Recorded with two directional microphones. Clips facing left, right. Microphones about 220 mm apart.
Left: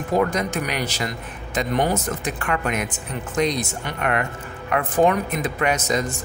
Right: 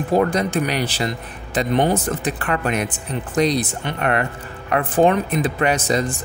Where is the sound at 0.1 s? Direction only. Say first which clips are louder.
Right 3 dB; 30° right (ahead or behind).